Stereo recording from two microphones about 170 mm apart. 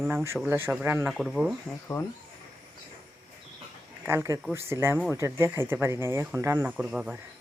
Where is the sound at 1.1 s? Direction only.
Centre (ahead or behind).